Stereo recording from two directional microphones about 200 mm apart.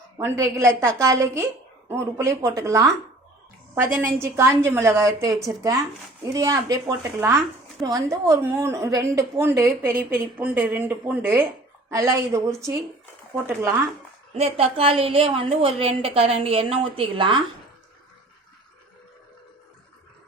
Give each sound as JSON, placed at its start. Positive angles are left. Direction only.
{"t": 0.2, "sound": "a woman's voice", "side_deg": -15}
{"t": 3.9, "sound": "a woman's voice", "side_deg": -10}
{"t": 14.3, "sound": "a woman's voice", "side_deg": -30}